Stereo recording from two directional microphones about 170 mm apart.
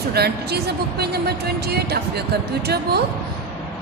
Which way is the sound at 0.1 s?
70° right (ahead or behind).